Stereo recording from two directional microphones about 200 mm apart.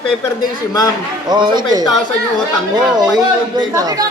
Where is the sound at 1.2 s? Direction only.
20° right (ahead or behind).